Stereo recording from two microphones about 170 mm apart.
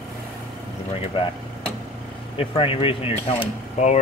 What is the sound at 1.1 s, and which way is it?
Speech, 30° left (ahead or behind).